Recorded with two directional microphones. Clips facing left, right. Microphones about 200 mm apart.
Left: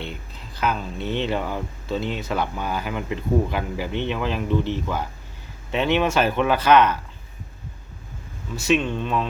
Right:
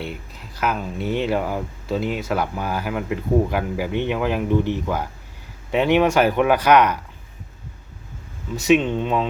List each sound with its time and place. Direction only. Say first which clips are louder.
0.0 s speech: right 3 dB; 10° right (ahead or behind)
8.5 s speech: right 4 dB; 15° right (ahead or behind)